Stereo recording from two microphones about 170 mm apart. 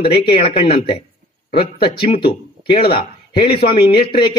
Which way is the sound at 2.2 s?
30° left (ahead or behind).